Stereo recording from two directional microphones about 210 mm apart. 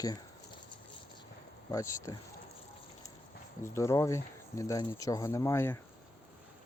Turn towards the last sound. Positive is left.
turn(degrees=10)  # may be behind; listen again after turning